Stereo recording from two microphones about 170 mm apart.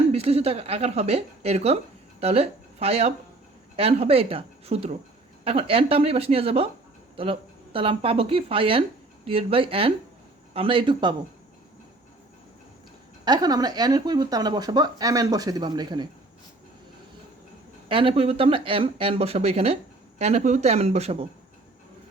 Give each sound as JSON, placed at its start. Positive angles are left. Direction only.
{"t": 0.1, "sound": "speech", "side_deg": -35}
{"t": 13.2, "sound": "speech", "side_deg": -25}
{"t": 17.8, "sound": "speech", "side_deg": -30}